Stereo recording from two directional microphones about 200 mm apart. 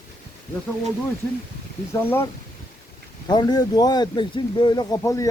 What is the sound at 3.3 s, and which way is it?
Speech, 20° left (ahead or behind).